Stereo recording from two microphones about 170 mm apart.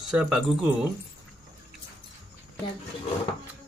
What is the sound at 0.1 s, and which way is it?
Speech, 5° right (ahead or behind).